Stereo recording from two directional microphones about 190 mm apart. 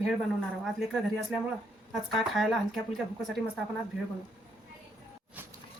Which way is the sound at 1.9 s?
Centre (ahead or behind).